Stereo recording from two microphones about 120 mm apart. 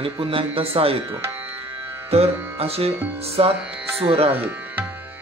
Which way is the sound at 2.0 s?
55° right (ahead or behind).